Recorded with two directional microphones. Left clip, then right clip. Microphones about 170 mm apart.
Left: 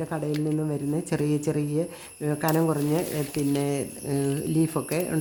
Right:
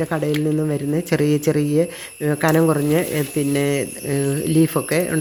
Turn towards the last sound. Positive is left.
turn(degrees=-10)  # may be behind; listen again after turning